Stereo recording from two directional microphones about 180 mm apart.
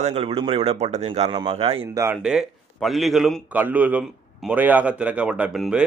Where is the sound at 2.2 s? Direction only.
5° right (ahead or behind).